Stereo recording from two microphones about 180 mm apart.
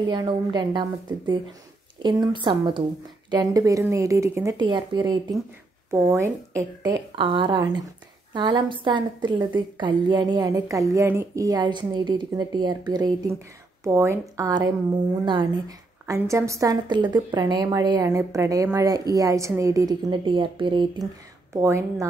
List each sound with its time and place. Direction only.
0.1 s a woman's voice: 25° right (ahead or behind)
7.2 s a woman's voice: 25° right (ahead or behind)